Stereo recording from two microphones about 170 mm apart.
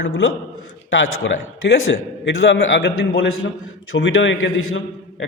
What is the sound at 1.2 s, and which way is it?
A man's voice, 90° left.